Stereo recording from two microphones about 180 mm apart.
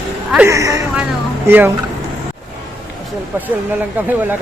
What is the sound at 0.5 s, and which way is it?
Speech, 15° right (ahead or behind).